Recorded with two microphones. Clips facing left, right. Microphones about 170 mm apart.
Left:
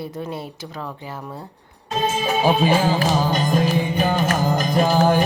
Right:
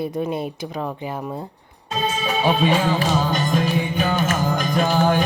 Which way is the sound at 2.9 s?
35° left (ahead or behind).